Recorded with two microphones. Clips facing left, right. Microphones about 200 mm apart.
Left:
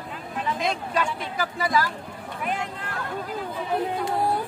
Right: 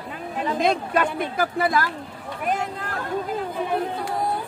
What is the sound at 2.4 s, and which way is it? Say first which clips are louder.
Speech: right 4 dB; 45° right (ahead or behind).